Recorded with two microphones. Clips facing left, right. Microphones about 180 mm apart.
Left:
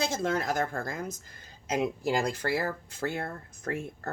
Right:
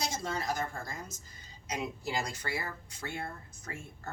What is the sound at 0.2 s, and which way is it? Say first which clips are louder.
Speech: left 6 dB; 55° left (ahead or behind).